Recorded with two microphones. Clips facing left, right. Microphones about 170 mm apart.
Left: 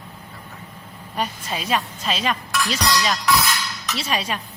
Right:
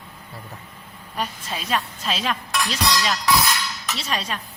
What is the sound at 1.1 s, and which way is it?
Speech, 10° left (ahead or behind).